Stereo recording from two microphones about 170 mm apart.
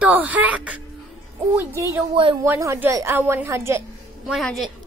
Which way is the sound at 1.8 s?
15° right (ahead or behind).